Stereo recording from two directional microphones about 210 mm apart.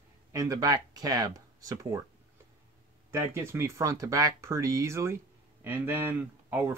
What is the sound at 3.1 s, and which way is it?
Speech, 10° right (ahead or behind).